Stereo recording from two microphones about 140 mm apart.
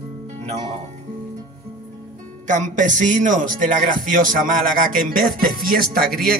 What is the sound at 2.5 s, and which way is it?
Speech, 65° right (ahead or behind).